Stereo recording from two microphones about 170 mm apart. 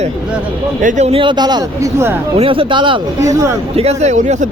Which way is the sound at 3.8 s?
40° right (ahead or behind).